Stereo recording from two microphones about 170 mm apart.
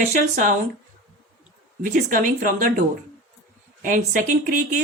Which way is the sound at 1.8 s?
50° right (ahead or behind).